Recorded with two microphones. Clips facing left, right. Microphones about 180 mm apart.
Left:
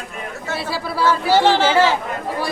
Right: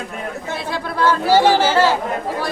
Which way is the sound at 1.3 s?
10° right (ahead or behind).